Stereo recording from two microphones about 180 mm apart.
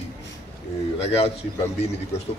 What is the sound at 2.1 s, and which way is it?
Speech, 35° left (ahead or behind).